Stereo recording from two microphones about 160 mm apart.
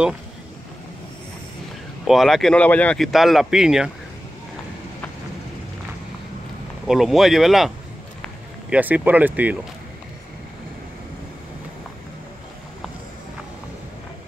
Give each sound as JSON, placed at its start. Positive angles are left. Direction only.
{"t": 2.0, "sound": "speech", "side_deg": 0}
{"t": 6.9, "sound": "speech", "side_deg": 0}